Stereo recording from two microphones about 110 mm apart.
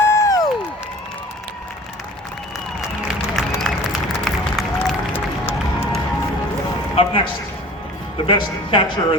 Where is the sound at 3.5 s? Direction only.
5° left (ahead or behind).